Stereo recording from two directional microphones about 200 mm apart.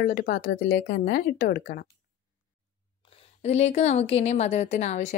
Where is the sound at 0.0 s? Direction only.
45° left (ahead or behind).